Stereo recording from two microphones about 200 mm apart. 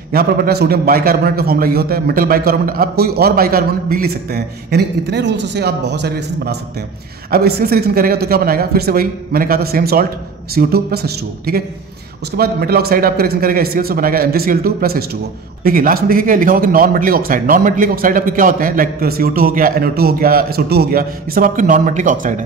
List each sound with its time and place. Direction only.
0.1 s a man's voice: 50° right (ahead or behind)